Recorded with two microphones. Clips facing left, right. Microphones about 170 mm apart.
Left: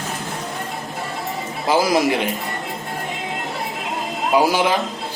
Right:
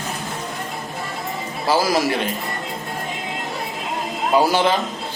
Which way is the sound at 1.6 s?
20° left (ahead or behind).